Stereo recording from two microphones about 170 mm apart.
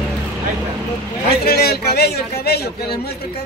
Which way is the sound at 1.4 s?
65° left (ahead or behind).